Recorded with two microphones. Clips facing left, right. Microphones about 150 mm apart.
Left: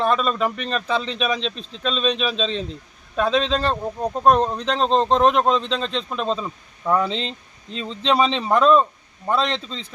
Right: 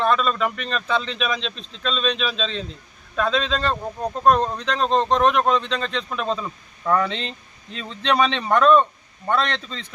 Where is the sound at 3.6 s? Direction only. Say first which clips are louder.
Left 2 dB; 5° left (ahead or behind).